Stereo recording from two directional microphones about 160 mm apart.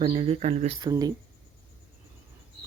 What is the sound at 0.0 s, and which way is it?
Speech, 40° right (ahead or behind).